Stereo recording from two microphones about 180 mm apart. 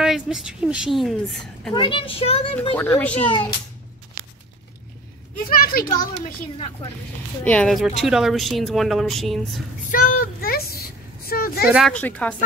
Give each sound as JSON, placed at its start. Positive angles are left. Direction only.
{"t": 0.0, "sound": "a woman's voice", "side_deg": -5}
{"t": 1.7, "sound": "a child's voice", "side_deg": 30}
{"t": 2.7, "sound": "a child's voice", "side_deg": 10}
{"t": 5.5, "sound": "a child's voice", "side_deg": 50}
{"t": 7.4, "sound": "a woman's voice", "side_deg": 5}
{"t": 9.8, "sound": "a sound", "side_deg": 50}
{"t": 11.9, "sound": "a child's voice", "side_deg": 10}